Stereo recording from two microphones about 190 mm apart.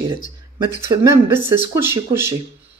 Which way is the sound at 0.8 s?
15° right (ahead or behind).